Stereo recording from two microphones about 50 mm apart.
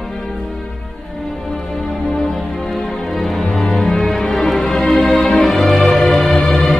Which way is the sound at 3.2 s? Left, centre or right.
Centre.